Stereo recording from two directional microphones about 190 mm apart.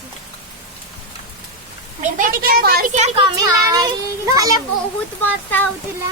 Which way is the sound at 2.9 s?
30° right (ahead or behind).